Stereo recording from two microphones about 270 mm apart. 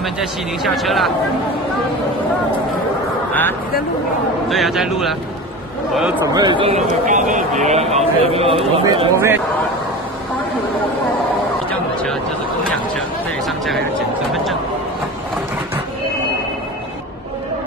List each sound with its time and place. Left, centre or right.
0.0 s speech: centre
4.5 s a man's voice: centre
14.3 s a sound: centre